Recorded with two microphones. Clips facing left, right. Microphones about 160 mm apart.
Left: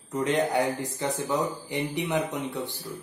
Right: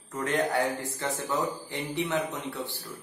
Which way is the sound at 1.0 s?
15° left (ahead or behind).